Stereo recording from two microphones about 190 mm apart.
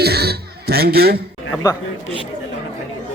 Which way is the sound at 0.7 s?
55° right (ahead or behind).